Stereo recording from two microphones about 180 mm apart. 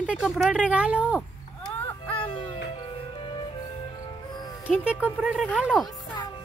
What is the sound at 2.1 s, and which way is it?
Music, 30° left (ahead or behind).